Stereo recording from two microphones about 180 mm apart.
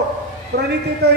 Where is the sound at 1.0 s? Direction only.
65° right (ahead or behind).